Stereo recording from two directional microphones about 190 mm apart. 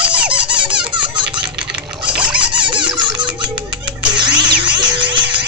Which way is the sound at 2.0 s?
5° right (ahead or behind).